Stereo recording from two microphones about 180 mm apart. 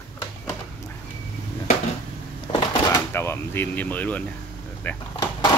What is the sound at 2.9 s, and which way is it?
A man's voice, 10° left (ahead or behind).